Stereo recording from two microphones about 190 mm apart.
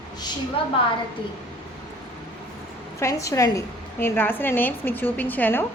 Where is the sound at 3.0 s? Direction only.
15° left (ahead or behind).